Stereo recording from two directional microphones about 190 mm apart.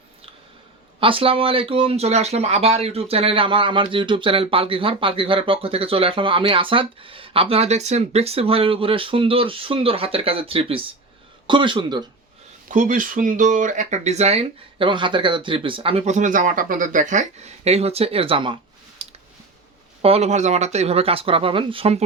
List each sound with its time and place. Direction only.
0.9 s speech: 30° right (ahead or behind)
12.6 s speech: 40° right (ahead or behind)